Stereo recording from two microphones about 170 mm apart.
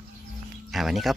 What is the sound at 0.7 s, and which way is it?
Speech, centre (ahead or behind).